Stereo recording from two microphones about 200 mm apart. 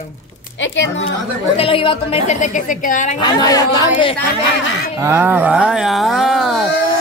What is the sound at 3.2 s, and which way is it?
Speech, 20° left (ahead or behind).